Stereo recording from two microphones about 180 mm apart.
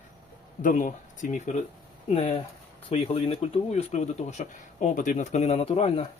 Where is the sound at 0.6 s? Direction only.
45° left (ahead or behind).